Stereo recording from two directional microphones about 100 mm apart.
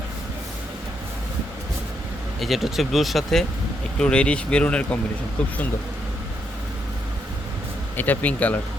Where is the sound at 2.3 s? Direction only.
Centre (ahead or behind).